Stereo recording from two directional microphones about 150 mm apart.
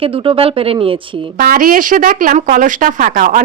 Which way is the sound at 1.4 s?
70° right (ahead or behind).